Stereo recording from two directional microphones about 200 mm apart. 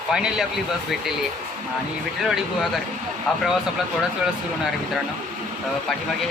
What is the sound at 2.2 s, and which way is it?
Speech, centre (ahead or behind).